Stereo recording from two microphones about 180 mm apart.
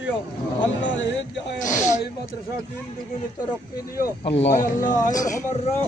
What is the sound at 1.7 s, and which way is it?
Speech, 15° left (ahead or behind).